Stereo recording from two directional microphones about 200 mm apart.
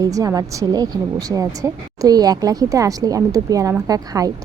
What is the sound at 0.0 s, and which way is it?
A woman's voice, 15° right (ahead or behind).